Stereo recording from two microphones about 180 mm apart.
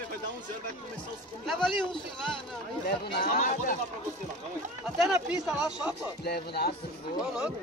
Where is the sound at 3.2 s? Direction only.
50° left (ahead or behind).